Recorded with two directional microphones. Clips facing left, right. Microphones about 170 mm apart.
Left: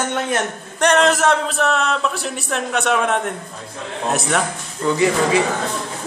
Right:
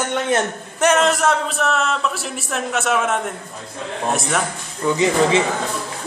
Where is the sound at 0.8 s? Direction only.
Centre (ahead or behind).